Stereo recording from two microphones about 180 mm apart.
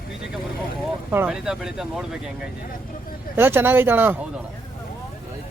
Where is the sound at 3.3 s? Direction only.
10° right (ahead or behind).